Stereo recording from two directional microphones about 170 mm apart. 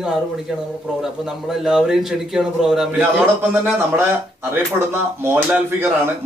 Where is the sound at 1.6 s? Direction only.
5° right (ahead or behind).